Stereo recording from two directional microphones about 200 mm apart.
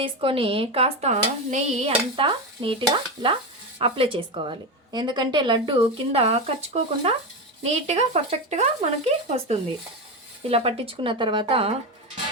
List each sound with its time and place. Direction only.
0.0 s a woman's voice: 25° right (ahead or behind)